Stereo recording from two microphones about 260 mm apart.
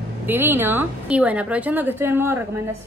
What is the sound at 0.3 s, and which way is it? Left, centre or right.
A woman's voice, centre.